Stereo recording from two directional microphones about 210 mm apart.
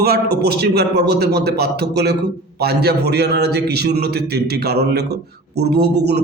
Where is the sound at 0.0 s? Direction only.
50° right (ahead or behind).